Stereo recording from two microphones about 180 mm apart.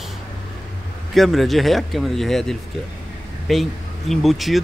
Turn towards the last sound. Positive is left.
turn(degrees=0)  # may be behind; listen again after turning